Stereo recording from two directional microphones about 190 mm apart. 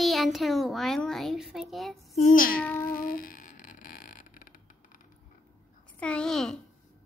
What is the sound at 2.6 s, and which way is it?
Child singing, 10° left (ahead or behind).